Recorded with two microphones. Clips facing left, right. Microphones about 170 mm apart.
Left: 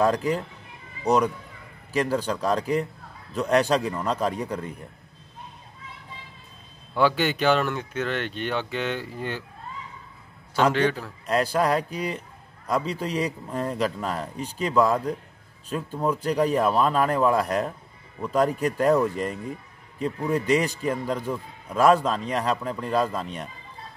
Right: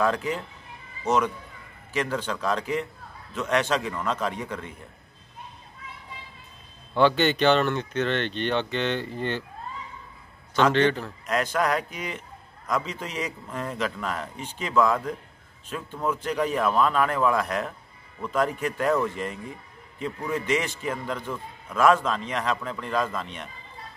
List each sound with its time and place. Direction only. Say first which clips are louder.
0.0 s a man's voice: left 3 dB; 35° left (ahead or behind)
6.9 s speech: right 2 dB; 5° left (ahead or behind)
10.5 s speech: right 1 dB; 10° left (ahead or behind)
11.2 s a man's voice: left 3 dB; 35° left (ahead or behind)